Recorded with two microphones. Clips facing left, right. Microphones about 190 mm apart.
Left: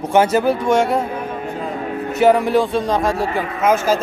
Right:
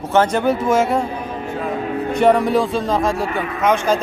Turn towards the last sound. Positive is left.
turn(degrees=5)  # may be behind; listen again after turning